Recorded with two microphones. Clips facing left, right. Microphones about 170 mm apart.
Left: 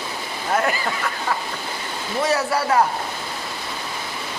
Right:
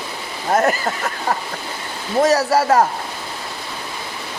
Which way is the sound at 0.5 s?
40° right (ahead or behind).